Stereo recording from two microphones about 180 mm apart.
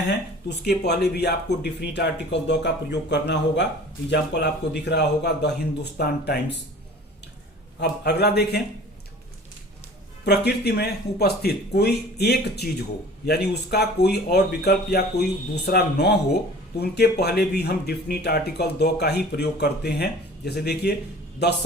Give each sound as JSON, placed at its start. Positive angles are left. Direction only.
{"t": 0.4, "sound": "speech", "side_deg": 65}
{"t": 7.8, "sound": "speech", "side_deg": 65}
{"t": 10.2, "sound": "speech", "side_deg": 65}